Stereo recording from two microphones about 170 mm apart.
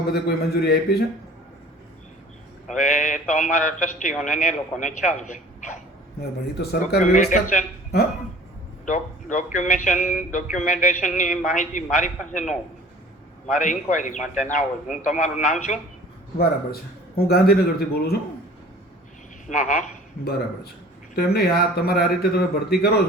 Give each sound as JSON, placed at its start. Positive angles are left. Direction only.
{"t": 0.1, "sound": "a man's voice", "side_deg": 75}
{"t": 2.6, "sound": "a man's voice", "side_deg": 45}
{"t": 6.1, "sound": "a man's voice", "side_deg": 70}
{"t": 7.0, "sound": "a man's voice", "side_deg": 45}
{"t": 8.9, "sound": "a man's voice", "side_deg": 45}
{"t": 16.4, "sound": "speech", "side_deg": 65}
{"t": 19.5, "sound": "a man's voice", "side_deg": 50}
{"t": 21.2, "sound": "a man's voice", "side_deg": 65}